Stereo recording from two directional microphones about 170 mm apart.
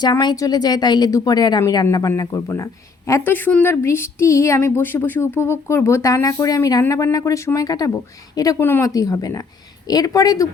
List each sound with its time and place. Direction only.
0.0 s a woman's voice: 25° left (ahead or behind)